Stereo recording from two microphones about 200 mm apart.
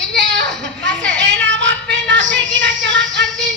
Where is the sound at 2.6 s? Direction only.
65° right (ahead or behind).